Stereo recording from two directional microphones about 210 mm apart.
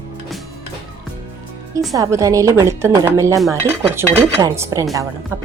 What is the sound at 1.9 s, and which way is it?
A woman's voice, 15° right (ahead or behind).